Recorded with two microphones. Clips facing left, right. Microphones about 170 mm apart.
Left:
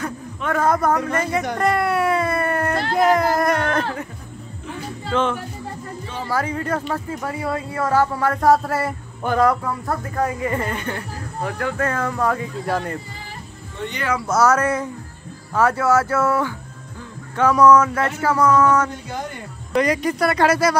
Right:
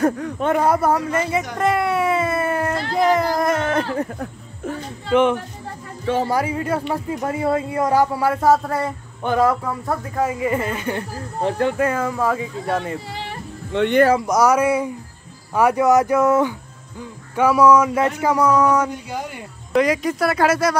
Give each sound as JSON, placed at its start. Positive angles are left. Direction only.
{"t": 0.5, "sound": "speech", "side_deg": -10}
{"t": 1.6, "sound": "a sound", "side_deg": 0}
{"t": 2.9, "sound": "speech", "side_deg": 0}
{"t": 5.1, "sound": "speech", "side_deg": -15}
{"t": 6.1, "sound": "speech", "side_deg": -65}
{"t": 6.4, "sound": "speech", "side_deg": -10}
{"t": 10.9, "sound": "speech", "side_deg": -25}
{"t": 11.8, "sound": "speech", "side_deg": -10}
{"t": 13.1, "sound": "music", "side_deg": -75}
{"t": 14.2, "sound": "speech", "side_deg": -15}